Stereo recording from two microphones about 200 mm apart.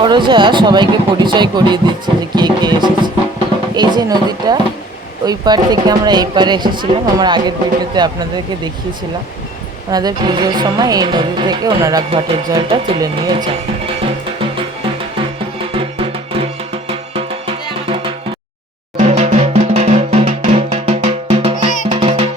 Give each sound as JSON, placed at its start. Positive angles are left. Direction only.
{"t": 0.0, "sound": "speech", "side_deg": -25}
{"t": 9.9, "sound": "speech", "side_deg": -20}
{"t": 15.7, "sound": "music", "side_deg": -25}
{"t": 18.9, "sound": "drum", "side_deg": -35}
{"t": 21.8, "sound": "music", "side_deg": -30}